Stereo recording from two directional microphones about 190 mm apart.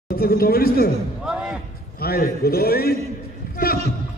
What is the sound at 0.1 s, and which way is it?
Speech, 50° left (ahead or behind).